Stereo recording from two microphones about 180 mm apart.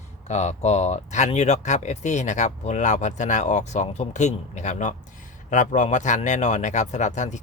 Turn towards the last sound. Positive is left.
turn(degrees=40)  # may be behind; listen again after turning